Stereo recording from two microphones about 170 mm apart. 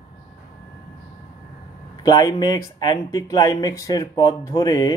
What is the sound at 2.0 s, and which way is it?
Speech, 20° left (ahead or behind).